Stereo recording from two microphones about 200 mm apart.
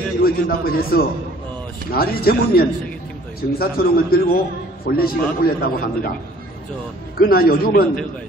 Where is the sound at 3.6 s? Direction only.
50° left (ahead or behind).